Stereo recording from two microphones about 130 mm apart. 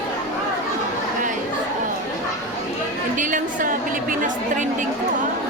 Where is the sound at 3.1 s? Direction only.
90° right.